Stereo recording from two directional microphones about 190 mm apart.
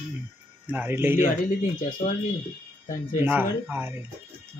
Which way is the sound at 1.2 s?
45° left (ahead or behind).